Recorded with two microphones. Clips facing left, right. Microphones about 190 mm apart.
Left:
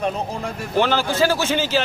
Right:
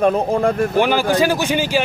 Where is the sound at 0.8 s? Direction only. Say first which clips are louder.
Right 1 dB; 15° right (ahead or behind).